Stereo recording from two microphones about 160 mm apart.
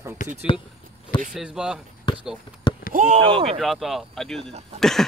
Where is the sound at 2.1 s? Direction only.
30° left (ahead or behind).